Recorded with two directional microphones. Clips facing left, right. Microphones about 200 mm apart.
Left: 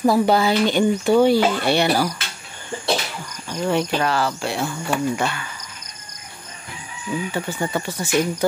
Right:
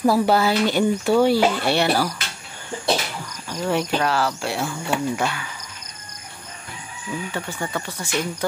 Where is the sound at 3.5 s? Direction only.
Centre (ahead or behind).